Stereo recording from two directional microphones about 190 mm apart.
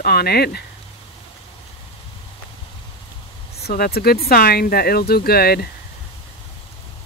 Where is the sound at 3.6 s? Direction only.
55° left (ahead or behind).